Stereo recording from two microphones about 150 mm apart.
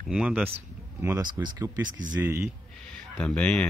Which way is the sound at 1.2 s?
30° right (ahead or behind).